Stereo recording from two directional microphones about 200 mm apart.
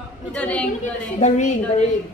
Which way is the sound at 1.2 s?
35° left (ahead or behind).